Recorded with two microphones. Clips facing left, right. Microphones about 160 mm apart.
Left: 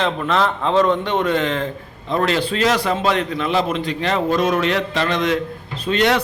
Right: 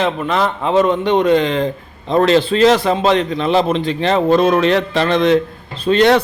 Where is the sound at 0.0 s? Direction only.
5° right (ahead or behind).